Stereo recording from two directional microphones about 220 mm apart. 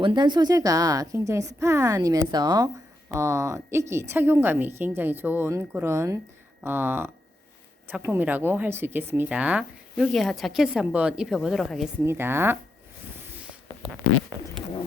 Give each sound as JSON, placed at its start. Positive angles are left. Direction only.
{"t": 0.0, "sound": "a woman's voice", "side_deg": -20}
{"t": 12.0, "sound": "a woman's voice", "side_deg": -10}
{"t": 13.2, "sound": "a sound", "side_deg": -5}